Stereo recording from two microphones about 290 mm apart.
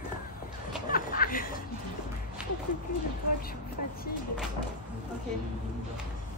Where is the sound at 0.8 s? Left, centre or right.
Left.